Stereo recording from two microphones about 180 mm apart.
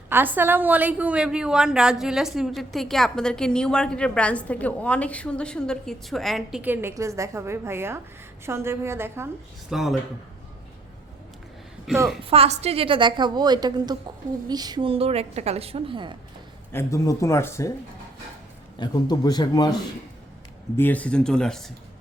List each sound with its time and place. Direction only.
0.1 s a woman's voice: 10° right (ahead or behind)
9.7 s a woman's voice: centre (ahead or behind)
11.9 s a woman's voice: centre (ahead or behind)
12.3 s a woman's voice: 35° right (ahead or behind)
16.7 s speech: 15° left (ahead or behind)
18.8 s a man's voice: 20° left (ahead or behind)
20.7 s a woman's voice: 10° left (ahead or behind)